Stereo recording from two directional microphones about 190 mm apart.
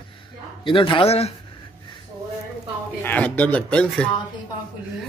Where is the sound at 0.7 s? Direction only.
25° left (ahead or behind).